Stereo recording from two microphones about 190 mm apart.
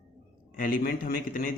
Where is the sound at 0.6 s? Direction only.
45° left (ahead or behind).